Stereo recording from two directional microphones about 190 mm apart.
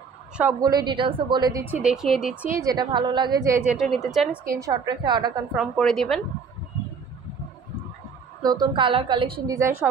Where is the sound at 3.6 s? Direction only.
5° right (ahead or behind).